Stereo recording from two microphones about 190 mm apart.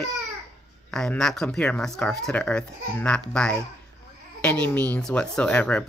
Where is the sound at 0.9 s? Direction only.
5° left (ahead or behind).